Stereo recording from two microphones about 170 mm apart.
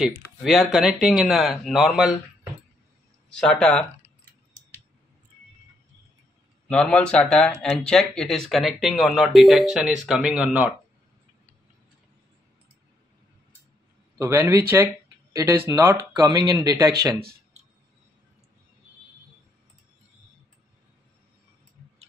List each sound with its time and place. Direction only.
0.4 s speech: centre (ahead or behind)
3.3 s speech: 5° left (ahead or behind)
6.7 s speech: 5° left (ahead or behind)
14.1 s a man's voice: 15° right (ahead or behind)